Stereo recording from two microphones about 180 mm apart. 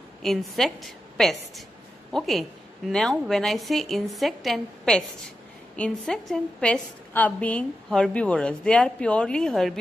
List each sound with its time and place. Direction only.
0.2 s a woman's voice: centre (ahead or behind)